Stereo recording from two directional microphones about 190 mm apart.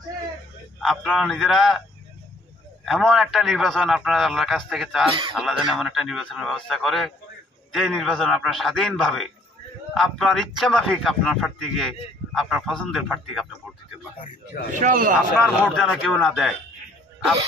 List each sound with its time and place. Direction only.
0.7 s a man's voice: centre (ahead or behind)
2.8 s a man's voice: centre (ahead or behind)
14.7 s speech: 45° right (ahead or behind)
15.6 s a man's voice: centre (ahead or behind)